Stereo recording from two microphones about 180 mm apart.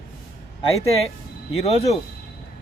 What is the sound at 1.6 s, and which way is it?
Speech, 35° left (ahead or behind).